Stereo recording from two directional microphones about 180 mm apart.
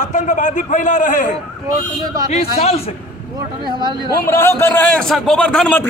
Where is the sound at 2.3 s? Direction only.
35° left (ahead or behind).